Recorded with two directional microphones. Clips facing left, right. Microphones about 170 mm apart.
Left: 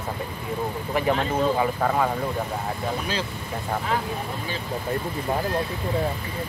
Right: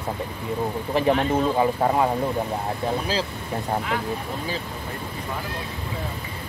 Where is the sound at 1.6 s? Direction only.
20° right (ahead or behind).